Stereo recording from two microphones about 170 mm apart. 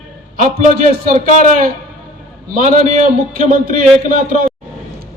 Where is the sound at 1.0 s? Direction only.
55° right (ahead or behind).